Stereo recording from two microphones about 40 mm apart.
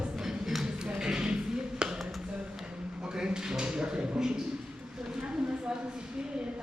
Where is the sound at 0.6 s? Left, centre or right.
Right.